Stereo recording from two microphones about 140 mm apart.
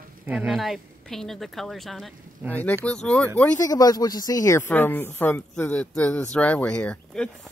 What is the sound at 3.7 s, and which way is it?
Speech, 30° left (ahead or behind).